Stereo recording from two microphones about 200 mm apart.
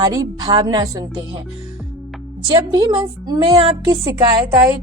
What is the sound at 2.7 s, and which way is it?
Speech, 20° right (ahead or behind).